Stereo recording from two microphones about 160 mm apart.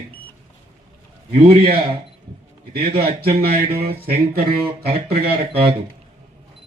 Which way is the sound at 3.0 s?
70° right (ahead or behind).